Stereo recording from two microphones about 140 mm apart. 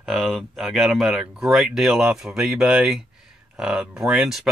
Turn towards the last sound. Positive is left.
turn(degrees=-5)  # may be behind; listen again after turning